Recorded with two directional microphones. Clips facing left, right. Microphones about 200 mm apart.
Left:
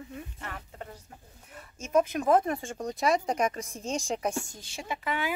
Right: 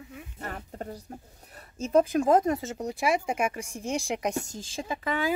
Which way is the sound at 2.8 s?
10° right (ahead or behind).